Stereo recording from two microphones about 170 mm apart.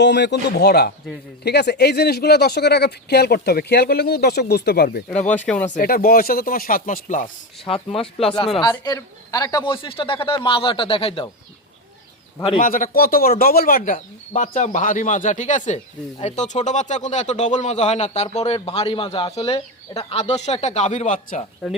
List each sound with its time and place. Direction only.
0.0 s speech: 90° left; by 5.0 s 70° left (ahead or behind)
5.0 s speech: 5° left (ahead or behind)
5.6 s speech: 50° left (ahead or behind)
7.7 s speech: 35° left (ahead or behind)
12.5 s speech: 55° left (ahead or behind)